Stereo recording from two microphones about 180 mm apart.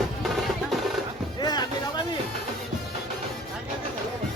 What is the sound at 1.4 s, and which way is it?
Music, 20° left (ahead or behind).